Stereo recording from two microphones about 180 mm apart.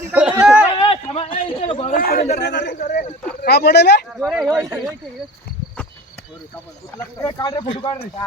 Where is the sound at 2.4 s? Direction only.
70° left (ahead or behind).